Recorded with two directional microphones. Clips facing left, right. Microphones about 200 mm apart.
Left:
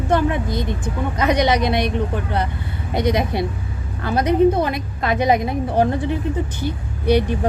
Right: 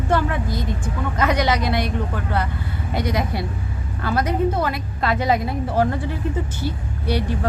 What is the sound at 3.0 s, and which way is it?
A woman's voice, 20° left (ahead or behind).